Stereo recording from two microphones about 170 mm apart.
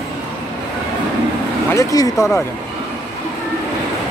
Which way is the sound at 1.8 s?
20° left (ahead or behind).